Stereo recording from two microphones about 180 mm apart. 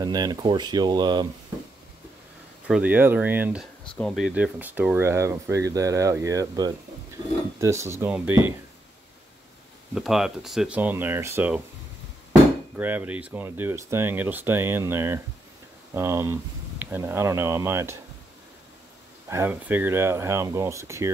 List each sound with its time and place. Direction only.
0.0 s speech: 20° right (ahead or behind)
2.7 s speech: 10° right (ahead or behind)
9.9 s speech: centre (ahead or behind)
19.2 s speech: 15° right (ahead or behind)